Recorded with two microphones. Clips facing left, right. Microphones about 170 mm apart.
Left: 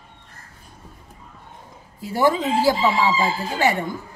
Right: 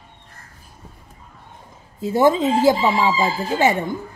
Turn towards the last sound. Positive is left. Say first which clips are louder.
# right 3 dB
turn(degrees=-20)  # may be behind; listen again after turning